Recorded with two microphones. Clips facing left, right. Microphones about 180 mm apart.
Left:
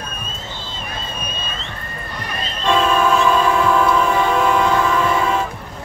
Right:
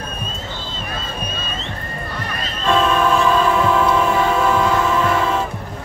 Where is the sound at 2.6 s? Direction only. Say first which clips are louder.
Even; centre (ahead or behind).